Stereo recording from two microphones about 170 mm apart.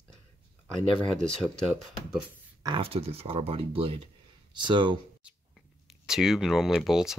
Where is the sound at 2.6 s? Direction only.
30° right (ahead or behind).